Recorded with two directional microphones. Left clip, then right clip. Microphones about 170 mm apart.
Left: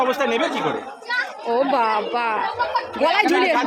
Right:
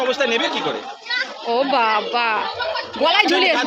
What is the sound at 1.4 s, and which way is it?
A woman's voice, 5° left (ahead or behind).